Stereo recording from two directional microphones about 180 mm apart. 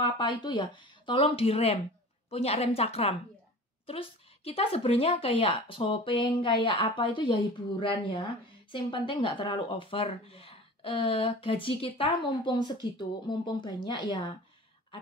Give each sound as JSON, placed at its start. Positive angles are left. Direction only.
{"t": 0.0, "sound": "a woman's voice", "side_deg": 25}